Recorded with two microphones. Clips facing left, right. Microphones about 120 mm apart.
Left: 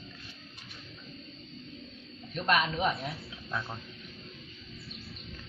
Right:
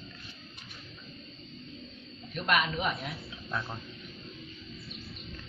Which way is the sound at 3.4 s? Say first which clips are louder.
Right 1 dB; centre (ahead or behind).